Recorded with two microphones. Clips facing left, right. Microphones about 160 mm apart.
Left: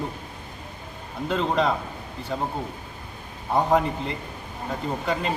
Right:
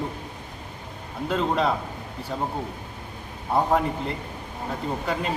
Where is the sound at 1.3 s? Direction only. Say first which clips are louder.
Even; 5° right (ahead or behind).